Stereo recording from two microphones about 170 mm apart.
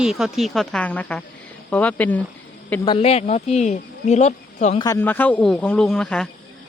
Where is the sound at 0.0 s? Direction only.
Centre (ahead or behind).